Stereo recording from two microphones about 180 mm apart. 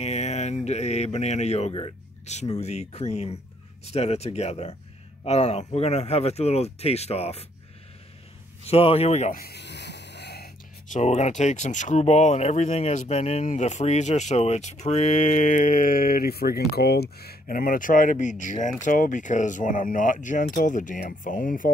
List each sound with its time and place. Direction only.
0.0 s speech: 40° left (ahead or behind)
8.6 s speech: 35° left (ahead or behind)
9.4 s a sound: 65° left (ahead or behind)
10.9 s speech: 40° left (ahead or behind)